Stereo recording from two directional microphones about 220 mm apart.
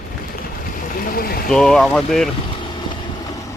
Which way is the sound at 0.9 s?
40° left (ahead or behind).